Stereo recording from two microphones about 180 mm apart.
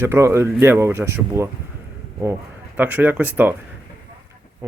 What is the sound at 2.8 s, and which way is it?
Speech, 10° right (ahead or behind).